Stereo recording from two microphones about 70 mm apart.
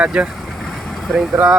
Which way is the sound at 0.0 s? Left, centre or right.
Centre.